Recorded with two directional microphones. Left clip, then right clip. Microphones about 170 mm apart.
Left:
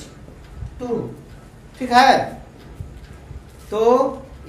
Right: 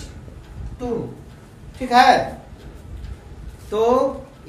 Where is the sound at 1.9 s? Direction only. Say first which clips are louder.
Even; 25° left (ahead or behind).